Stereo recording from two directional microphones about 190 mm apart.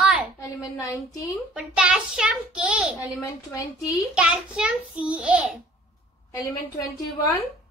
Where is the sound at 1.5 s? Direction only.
5° right (ahead or behind).